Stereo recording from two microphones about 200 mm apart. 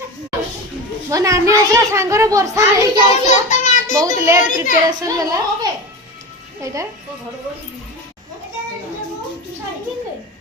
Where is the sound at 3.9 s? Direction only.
15° right (ahead or behind).